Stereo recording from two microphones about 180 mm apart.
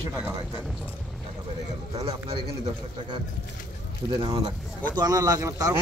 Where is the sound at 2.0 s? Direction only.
35° right (ahead or behind).